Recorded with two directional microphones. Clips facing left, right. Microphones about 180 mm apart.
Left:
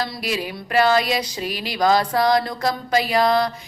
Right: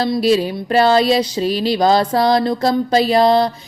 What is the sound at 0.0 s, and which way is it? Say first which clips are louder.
Speech: right 11 dB; 30° right (ahead or behind).